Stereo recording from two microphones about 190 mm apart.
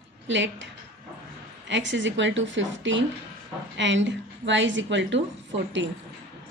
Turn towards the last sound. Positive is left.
turn(degrees=-75)  # may be behind; listen again after turning